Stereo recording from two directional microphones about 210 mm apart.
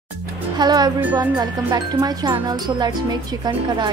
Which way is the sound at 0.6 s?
20° right (ahead or behind).